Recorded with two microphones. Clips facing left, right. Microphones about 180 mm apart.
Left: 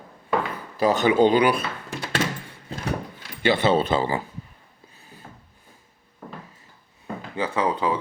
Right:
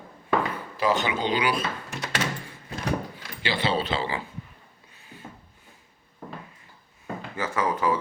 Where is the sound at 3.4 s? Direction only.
50° left (ahead or behind).